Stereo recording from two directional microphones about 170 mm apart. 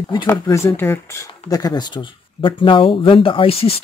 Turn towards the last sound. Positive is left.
turn(degrees=35)  # may be behind; listen again after turning